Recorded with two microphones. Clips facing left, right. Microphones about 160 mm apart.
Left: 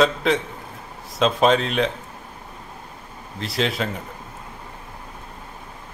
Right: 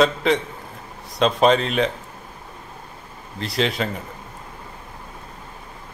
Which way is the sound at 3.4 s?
Centre (ahead or behind).